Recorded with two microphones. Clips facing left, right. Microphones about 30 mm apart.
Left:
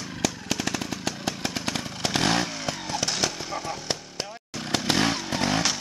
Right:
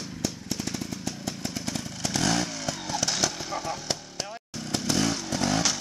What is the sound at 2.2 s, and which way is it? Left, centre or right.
Motorcycle, left.